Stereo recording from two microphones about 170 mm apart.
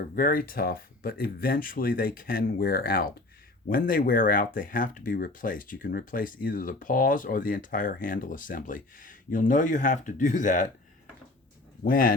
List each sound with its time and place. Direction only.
0.2 s speech: 55° left (ahead or behind)
11.9 s speech: 55° left (ahead or behind)